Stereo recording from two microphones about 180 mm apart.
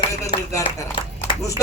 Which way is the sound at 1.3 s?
25° left (ahead or behind).